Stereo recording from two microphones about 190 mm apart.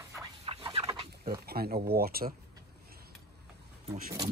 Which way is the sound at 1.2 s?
55° right (ahead or behind).